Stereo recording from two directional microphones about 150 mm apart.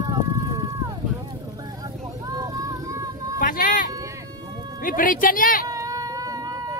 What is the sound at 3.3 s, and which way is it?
Speech, 70° left (ahead or behind).